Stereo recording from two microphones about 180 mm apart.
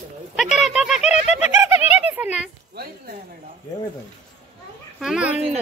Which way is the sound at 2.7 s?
55° right (ahead or behind).